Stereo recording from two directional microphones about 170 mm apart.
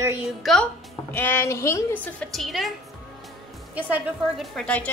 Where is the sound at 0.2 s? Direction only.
Centre (ahead or behind).